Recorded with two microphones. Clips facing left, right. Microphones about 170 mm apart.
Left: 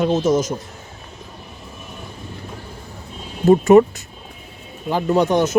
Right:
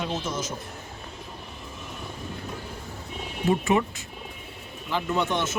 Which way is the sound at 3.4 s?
45° left (ahead or behind).